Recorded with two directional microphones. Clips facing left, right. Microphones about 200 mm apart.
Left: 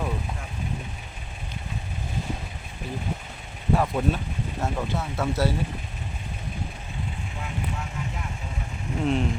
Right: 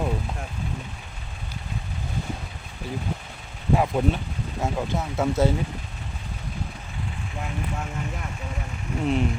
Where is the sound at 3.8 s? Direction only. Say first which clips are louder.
Right 2 dB; 20° right (ahead or behind).